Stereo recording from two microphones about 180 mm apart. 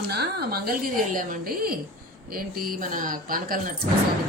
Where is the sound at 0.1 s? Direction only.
60° right (ahead or behind).